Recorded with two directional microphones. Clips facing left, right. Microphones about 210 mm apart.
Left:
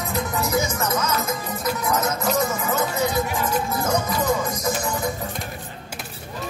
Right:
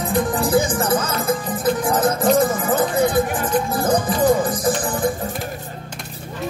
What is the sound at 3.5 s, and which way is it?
Music, 30° right (ahead or behind).